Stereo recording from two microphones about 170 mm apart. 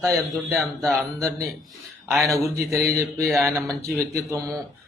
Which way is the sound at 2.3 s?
20° right (ahead or behind).